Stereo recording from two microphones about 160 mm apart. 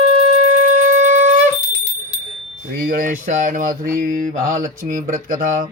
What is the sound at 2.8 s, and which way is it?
Speech, 60° right (ahead or behind).